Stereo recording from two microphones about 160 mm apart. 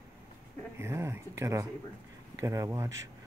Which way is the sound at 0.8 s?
15° right (ahead or behind).